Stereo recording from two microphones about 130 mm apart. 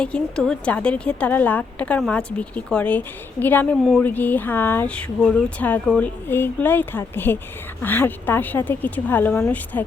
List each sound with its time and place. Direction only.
0.0 s a woman's voice: 5° left (ahead or behind)